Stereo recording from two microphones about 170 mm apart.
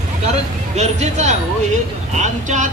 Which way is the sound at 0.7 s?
40° right (ahead or behind).